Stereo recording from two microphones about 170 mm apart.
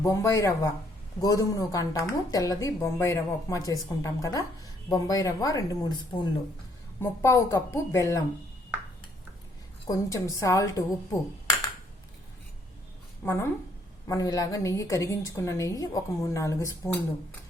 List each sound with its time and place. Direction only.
0.0 s a woman's voice: 15° left (ahead or behind)
7.0 s speech: 15° left (ahead or behind)
9.9 s a woman's voice: 20° left (ahead or behind)
13.2 s a woman's voice: 15° left (ahead or behind)